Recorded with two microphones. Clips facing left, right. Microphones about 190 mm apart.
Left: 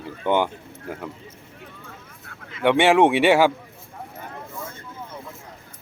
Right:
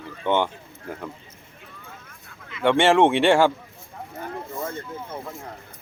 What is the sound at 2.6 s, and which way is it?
Speech, 10° left (ahead or behind).